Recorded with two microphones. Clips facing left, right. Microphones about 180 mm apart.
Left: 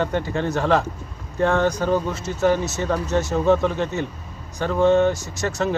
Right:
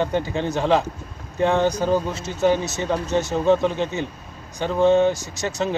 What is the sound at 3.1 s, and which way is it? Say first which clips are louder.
Speech: even; centre (ahead or behind).